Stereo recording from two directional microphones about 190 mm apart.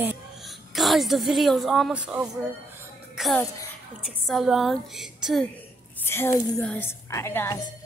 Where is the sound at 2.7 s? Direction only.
Centre (ahead or behind).